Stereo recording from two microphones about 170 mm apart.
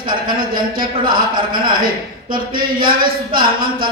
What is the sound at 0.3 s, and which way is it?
Speech, 55° right (ahead or behind).